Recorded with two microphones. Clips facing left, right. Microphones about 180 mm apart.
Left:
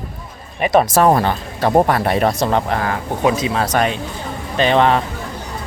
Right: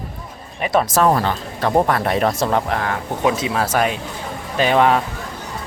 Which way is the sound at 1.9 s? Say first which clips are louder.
Left 2 dB; 5° left (ahead or behind).